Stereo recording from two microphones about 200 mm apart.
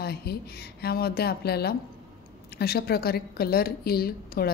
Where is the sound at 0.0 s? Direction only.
50° left (ahead or behind).